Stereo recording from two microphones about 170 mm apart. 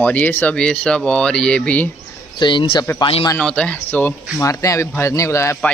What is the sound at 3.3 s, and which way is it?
Speech, 5° left (ahead or behind).